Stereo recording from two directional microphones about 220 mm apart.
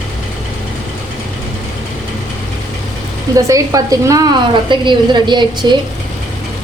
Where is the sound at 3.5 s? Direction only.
15° right (ahead or behind).